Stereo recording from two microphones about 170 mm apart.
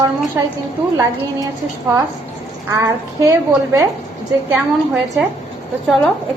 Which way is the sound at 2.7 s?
20° right (ahead or behind).